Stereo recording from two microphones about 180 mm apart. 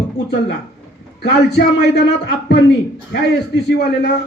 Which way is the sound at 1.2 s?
65° left (ahead or behind).